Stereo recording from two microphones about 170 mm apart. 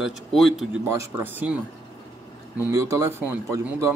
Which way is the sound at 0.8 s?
15° right (ahead or behind).